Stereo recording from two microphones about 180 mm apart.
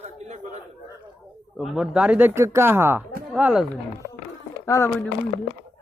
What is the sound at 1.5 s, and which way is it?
Speech, 5° right (ahead or behind).